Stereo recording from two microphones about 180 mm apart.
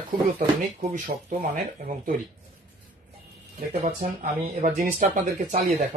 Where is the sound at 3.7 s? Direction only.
35° right (ahead or behind).